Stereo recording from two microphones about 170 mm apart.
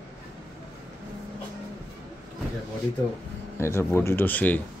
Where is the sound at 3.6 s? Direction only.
15° left (ahead or behind).